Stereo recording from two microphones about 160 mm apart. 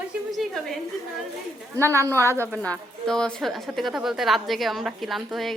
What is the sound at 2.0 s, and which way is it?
A woman's voice, 15° left (ahead or behind).